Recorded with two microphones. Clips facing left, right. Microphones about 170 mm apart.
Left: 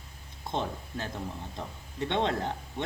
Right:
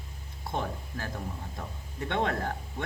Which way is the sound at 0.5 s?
25° left (ahead or behind).